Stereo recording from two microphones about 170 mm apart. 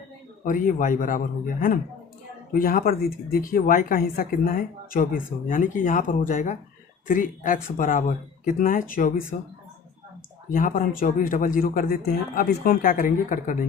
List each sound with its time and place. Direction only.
0.4 s speech: 50° left (ahead or behind)
2.5 s speech: 55° left (ahead or behind)
10.5 s speech: 50° left (ahead or behind)